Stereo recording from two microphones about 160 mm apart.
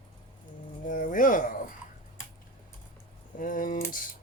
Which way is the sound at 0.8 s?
55° left (ahead or behind).